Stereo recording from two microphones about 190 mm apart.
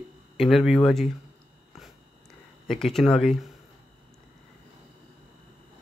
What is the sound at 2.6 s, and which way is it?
Speech, centre (ahead or behind).